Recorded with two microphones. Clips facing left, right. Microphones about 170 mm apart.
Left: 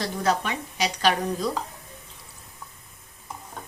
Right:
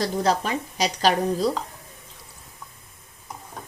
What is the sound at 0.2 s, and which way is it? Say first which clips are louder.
Speech: even; 35° right (ahead or behind).